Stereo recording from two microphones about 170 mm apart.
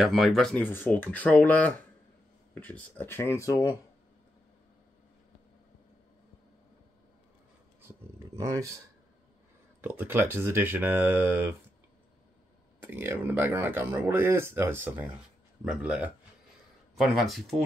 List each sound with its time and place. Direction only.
0.0 s speech: centre (ahead or behind); by 3.7 s 15° left (ahead or behind)
8.4 s speech: 20° right (ahead or behind)
9.8 s speech: 10° right (ahead or behind)
12.8 s speech: 10° right (ahead or behind)